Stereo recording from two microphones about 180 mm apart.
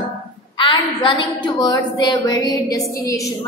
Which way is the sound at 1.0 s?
25° left (ahead or behind).